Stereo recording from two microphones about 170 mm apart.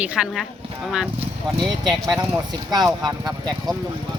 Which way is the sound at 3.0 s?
20° right (ahead or behind).